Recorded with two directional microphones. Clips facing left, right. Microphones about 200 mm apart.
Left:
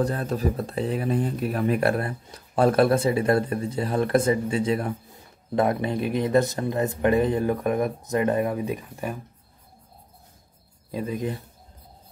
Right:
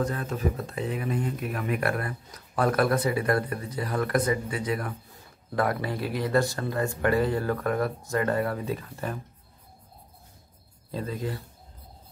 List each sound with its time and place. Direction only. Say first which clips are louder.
0.0 s speech: left 4 dB; 35° left (ahead or behind); by 9.2 s 15° left (ahead or behind)
10.9 s speech: left 4 dB; 15° left (ahead or behind)